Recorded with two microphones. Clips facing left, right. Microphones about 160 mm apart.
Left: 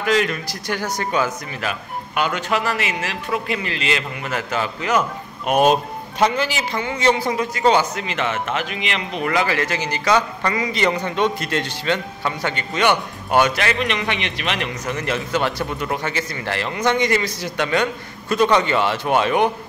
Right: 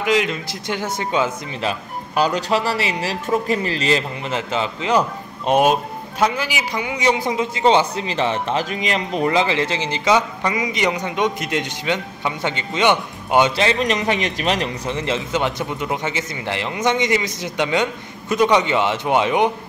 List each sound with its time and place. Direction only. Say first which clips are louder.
0.0 s a man's voice: even; 15° right (ahead or behind); by 4.0 s 35° right (ahead or behind)
4.2 s a man's voice: right 1 dB; 25° right (ahead or behind)
5.6 s a man's voice: left 3 dB; 5° right (ahead or behind); by 9.3 s 40° right (ahead or behind)
9.3 s a man's voice: left 1 dB; 25° right (ahead or behind)
14.9 s a man's voice: left 1 dB; 25° right (ahead or behind)